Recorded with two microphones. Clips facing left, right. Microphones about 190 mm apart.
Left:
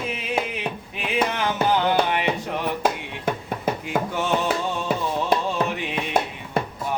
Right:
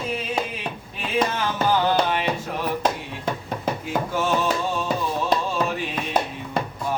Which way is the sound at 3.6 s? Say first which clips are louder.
Left 1 dB; 5° left (ahead or behind).